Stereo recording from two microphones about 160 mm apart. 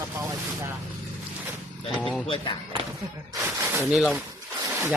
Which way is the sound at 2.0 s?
5° left (ahead or behind).